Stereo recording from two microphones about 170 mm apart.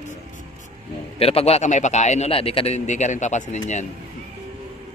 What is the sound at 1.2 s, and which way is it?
Speech, 35° left (ahead or behind).